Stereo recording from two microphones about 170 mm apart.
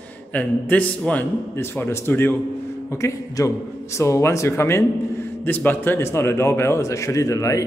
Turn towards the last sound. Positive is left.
turn(degrees=20)  # may be behind; listen again after turning